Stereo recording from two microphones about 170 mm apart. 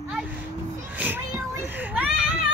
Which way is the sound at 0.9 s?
10° right (ahead or behind).